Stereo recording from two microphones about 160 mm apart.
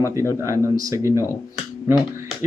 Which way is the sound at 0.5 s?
20° right (ahead or behind).